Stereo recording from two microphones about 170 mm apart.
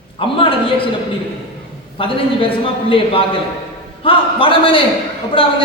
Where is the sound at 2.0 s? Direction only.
30° left (ahead or behind).